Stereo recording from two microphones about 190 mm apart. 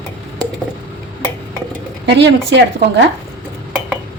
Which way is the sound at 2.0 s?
70° right (ahead or behind).